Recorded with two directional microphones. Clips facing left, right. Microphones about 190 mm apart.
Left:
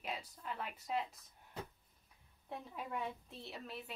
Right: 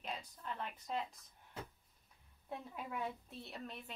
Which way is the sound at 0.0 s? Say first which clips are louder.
Left 1 dB; 10° left (ahead or behind).